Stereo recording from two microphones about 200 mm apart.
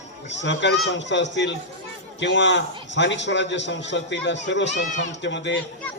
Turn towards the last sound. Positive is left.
turn(degrees=65)  # may be behind; listen again after turning